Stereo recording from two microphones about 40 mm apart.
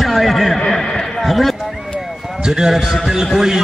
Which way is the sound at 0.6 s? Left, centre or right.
Centre.